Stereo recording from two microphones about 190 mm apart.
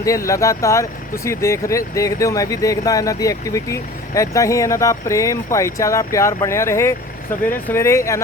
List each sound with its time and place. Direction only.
0.0 s speech: 15° left (ahead or behind)